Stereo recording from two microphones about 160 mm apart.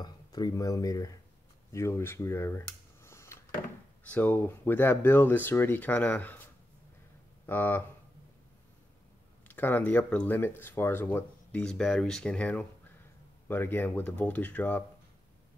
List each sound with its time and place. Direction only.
0.0 s speech: 25° left (ahead or behind)
9.5 s speech: 10° left (ahead or behind)